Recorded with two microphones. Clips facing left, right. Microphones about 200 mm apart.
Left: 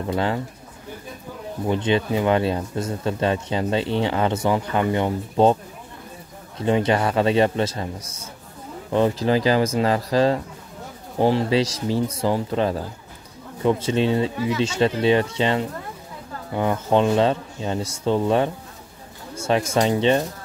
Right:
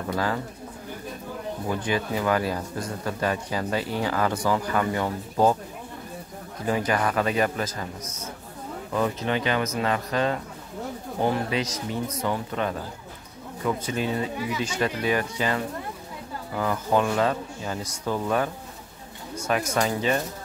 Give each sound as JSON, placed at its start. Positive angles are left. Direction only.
{"t": 0.1, "sound": "speech", "side_deg": 25}
{"t": 1.7, "sound": "speech", "side_deg": 25}
{"t": 6.6, "sound": "speech", "side_deg": 25}
{"t": 8.9, "sound": "speech", "side_deg": 30}
{"t": 19.7, "sound": "speech", "side_deg": 25}